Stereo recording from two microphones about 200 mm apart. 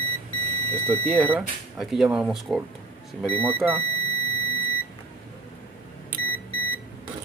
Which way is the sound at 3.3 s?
30° right (ahead or behind).